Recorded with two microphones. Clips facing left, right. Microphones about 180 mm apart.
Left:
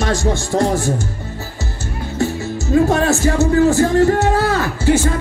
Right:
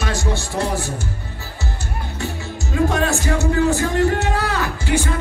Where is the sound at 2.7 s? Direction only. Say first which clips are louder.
Left 5 dB; 35° left (ahead or behind).